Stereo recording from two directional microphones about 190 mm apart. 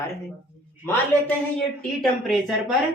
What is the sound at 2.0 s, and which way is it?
Speech, centre (ahead or behind).